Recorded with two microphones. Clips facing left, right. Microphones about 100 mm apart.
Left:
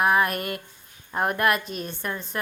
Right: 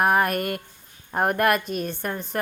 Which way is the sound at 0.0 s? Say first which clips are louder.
Right 1 dB; 50° right (ahead or behind).